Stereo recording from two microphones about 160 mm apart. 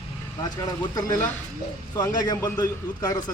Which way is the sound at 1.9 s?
20° left (ahead or behind).